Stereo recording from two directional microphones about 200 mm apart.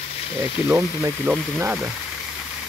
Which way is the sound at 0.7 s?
10° right (ahead or behind).